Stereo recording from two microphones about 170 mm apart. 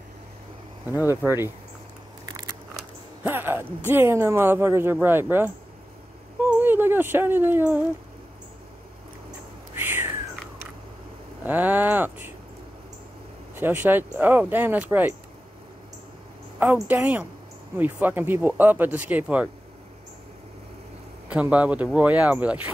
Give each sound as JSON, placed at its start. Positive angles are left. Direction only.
{"t": 3.3, "sound": "speech", "side_deg": -10}
{"t": 9.8, "sound": "cat", "side_deg": -10}
{"t": 11.4, "sound": "speech", "side_deg": -10}
{"t": 13.6, "sound": "speech", "side_deg": -10}
{"t": 16.5, "sound": "speech", "side_deg": -10}
{"t": 21.3, "sound": "speech", "side_deg": -5}